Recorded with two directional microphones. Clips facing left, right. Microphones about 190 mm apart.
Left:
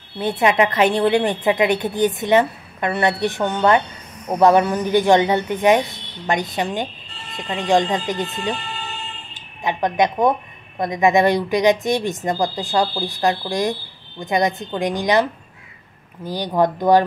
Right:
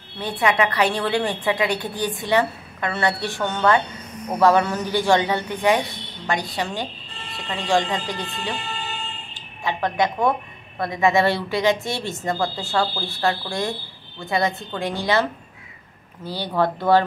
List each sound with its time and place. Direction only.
0.2 s a woman's voice: 20° left (ahead or behind)
9.6 s a woman's voice: 20° left (ahead or behind)
16.3 s speech: 15° left (ahead or behind)